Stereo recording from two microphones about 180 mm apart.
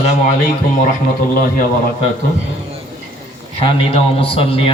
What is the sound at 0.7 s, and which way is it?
Speech, 50° left (ahead or behind).